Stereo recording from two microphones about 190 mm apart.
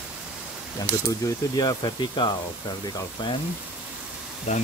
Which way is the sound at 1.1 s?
20° left (ahead or behind).